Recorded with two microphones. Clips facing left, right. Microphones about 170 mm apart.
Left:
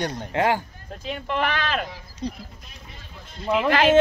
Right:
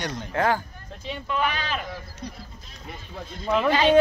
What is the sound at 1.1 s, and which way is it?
Speech, 55° left (ahead or behind).